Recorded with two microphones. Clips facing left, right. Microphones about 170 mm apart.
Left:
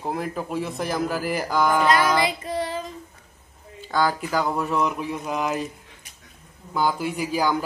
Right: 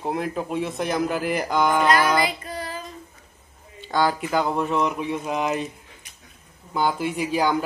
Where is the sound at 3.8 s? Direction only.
25° right (ahead or behind).